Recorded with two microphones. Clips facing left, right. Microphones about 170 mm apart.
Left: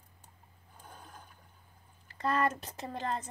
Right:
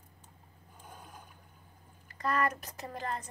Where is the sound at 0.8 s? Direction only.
10° right (ahead or behind).